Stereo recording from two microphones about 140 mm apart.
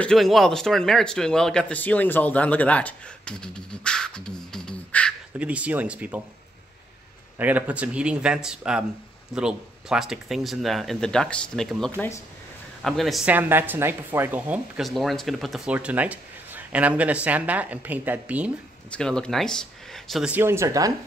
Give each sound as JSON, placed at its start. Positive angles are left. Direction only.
{"t": 0.0, "sound": "speech", "side_deg": 0}
{"t": 5.4, "sound": "speech", "side_deg": -10}
{"t": 7.3, "sound": "speech", "side_deg": -10}
{"t": 13.3, "sound": "speech", "side_deg": -15}
{"t": 14.8, "sound": "speech", "side_deg": 0}
{"t": 18.9, "sound": "speech", "side_deg": 5}
{"t": 20.2, "sound": "speech", "side_deg": -15}